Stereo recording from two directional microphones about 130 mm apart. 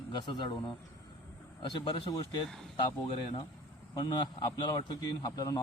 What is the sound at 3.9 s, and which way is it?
A man's voice, 35° left (ahead or behind).